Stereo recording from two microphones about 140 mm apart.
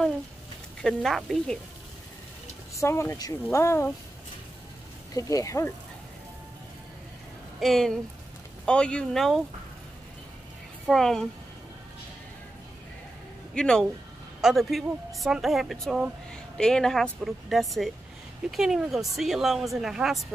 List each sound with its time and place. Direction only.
0.8 s a woman's voice: centre (ahead or behind)
2.8 s speech: 20° left (ahead or behind)
5.1 s speech: 25° left (ahead or behind)
7.6 s a woman's voice: centre (ahead or behind)
10.9 s a woman's voice: centre (ahead or behind)
13.6 s a woman's voice: 5° left (ahead or behind)